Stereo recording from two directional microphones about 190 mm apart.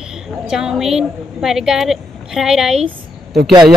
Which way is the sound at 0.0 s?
5° right (ahead or behind).